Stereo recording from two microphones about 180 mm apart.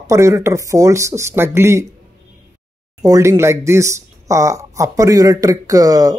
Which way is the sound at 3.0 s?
15° right (ahead or behind).